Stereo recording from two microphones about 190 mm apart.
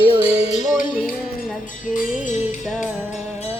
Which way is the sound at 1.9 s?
40° left (ahead or behind).